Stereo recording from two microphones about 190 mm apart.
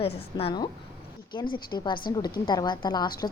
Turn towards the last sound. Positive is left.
turn(degrees=20)  # may be behind; listen again after turning